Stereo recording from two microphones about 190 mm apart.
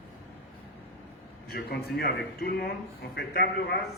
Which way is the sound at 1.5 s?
55° left (ahead or behind).